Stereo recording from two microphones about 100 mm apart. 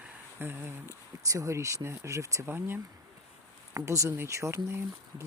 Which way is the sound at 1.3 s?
30° right (ahead or behind).